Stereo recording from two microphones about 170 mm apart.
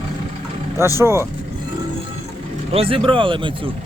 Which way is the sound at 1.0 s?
15° right (ahead or behind).